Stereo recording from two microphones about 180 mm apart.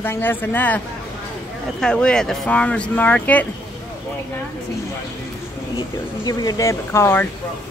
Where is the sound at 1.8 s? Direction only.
5° left (ahead or behind).